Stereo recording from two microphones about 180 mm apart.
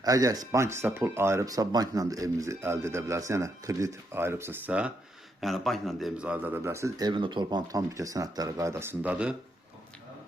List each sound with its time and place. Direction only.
0.0 s speech: 20° right (ahead or behind)